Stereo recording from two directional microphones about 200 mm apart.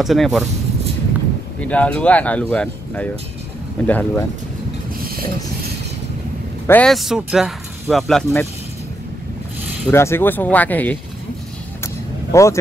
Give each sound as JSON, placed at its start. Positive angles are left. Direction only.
{"t": 0.0, "sound": "speech", "side_deg": 0}
{"t": 1.6, "sound": "speech", "side_deg": 5}
{"t": 6.7, "sound": "speech", "side_deg": 5}
{"t": 9.8, "sound": "speech", "side_deg": 15}
{"t": 11.8, "sound": "vehicle", "side_deg": 15}